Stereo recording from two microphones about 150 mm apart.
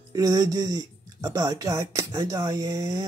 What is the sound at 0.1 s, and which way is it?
Speech, 25° right (ahead or behind).